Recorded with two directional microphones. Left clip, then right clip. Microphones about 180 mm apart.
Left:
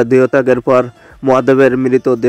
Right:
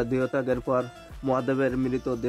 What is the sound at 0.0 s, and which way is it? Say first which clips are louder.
Speech: left 16 dB; 40° left (ahead or behind).